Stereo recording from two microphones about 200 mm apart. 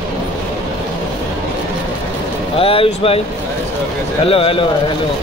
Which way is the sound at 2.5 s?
30° left (ahead or behind).